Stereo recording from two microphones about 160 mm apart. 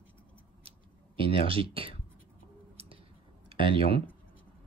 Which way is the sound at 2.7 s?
35° right (ahead or behind).